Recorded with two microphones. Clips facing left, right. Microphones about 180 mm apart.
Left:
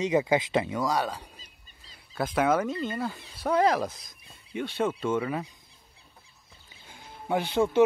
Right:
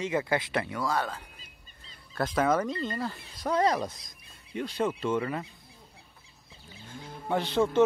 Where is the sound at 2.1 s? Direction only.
5° left (ahead or behind).